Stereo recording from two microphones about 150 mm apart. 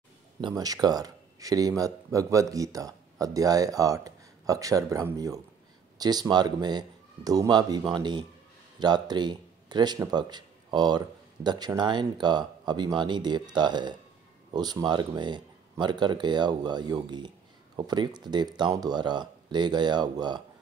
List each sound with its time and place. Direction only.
0.4 s speech: 25° right (ahead or behind)